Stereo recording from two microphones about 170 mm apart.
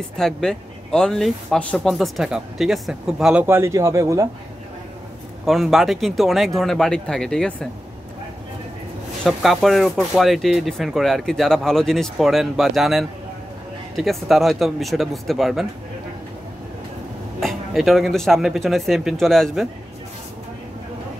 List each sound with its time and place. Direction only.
0.2 s speech: 5° left (ahead or behind)
3.4 s speech: 15° right (ahead or behind)
5.4 s speech: centre (ahead or behind)
9.2 s speech: centre (ahead or behind)
17.4 s speech: centre (ahead or behind)